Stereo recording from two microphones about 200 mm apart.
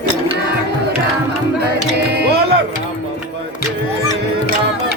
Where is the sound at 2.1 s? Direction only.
55° right (ahead or behind).